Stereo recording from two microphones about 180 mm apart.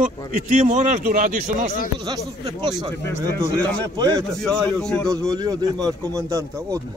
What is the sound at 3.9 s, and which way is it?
Speech, 20° right (ahead or behind).